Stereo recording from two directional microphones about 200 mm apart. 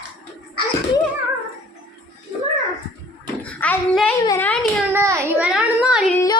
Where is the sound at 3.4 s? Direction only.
5° left (ahead or behind).